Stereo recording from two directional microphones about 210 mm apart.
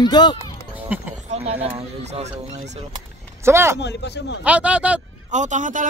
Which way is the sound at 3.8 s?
55° left (ahead or behind).